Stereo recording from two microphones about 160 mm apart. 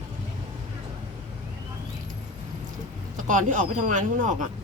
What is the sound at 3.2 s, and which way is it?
Speech, 55° right (ahead or behind).